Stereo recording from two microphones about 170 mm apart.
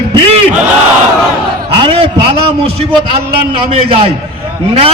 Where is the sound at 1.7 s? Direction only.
30° right (ahead or behind).